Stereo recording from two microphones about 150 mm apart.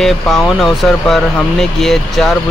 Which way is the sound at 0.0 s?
Centre (ahead or behind).